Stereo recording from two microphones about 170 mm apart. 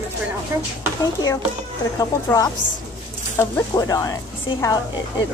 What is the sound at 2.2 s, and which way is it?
Speech, 20° left (ahead or behind).